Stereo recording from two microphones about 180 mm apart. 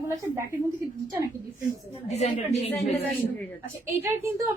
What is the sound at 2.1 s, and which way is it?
Speech, 35° left (ahead or behind).